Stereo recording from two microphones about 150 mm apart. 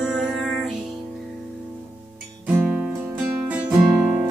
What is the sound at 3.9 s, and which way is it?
Music, 20° right (ahead or behind).